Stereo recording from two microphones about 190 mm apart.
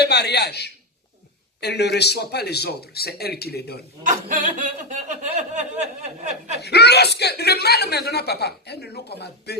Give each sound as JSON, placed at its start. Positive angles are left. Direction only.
{"t": 0.0, "sound": "speech", "side_deg": 60}
{"t": 4.0, "sound": "speech", "side_deg": -40}
{"t": 6.6, "sound": "speech", "side_deg": 60}